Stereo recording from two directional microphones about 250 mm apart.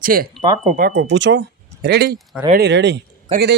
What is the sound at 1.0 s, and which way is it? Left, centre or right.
A man's voice, right.